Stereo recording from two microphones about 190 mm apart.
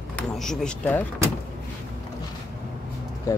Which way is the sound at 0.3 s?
Centre (ahead or behind).